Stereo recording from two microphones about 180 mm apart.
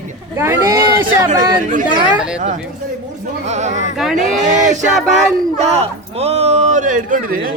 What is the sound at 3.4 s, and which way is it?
Speech, 40° right (ahead or behind).